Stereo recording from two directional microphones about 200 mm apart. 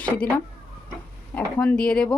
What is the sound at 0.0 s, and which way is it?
Speech, 5° left (ahead or behind).